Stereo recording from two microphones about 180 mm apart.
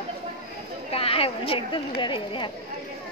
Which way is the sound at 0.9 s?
30° left (ahead or behind).